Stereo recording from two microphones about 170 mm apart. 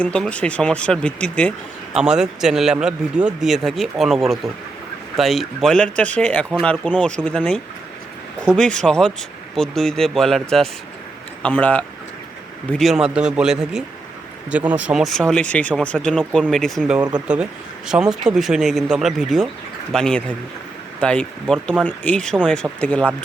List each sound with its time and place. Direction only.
0.0 s speech: 5° left (ahead or behind)
2.0 s speech: 5° right (ahead or behind)
11.4 s speech: 5° left (ahead or behind)
17.0 s speech: 25° right (ahead or behind)
17.2 s speech: 5° right (ahead or behind)